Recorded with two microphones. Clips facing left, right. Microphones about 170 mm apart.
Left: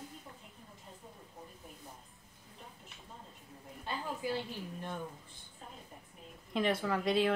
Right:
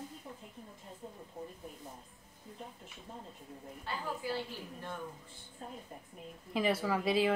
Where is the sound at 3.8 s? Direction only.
20° left (ahead or behind).